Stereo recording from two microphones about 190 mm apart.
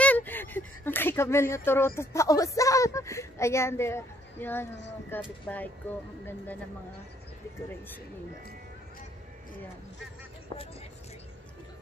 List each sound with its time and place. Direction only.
0.0 s speech: 10° left (ahead or behind)
10.5 s speech: 25° left (ahead or behind)